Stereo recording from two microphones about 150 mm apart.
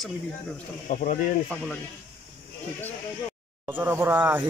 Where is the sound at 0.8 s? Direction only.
60° left (ahead or behind).